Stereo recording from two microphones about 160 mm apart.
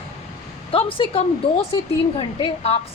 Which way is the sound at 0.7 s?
35° left (ahead or behind).